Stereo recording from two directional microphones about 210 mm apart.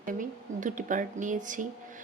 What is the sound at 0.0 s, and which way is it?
Speech, 40° right (ahead or behind).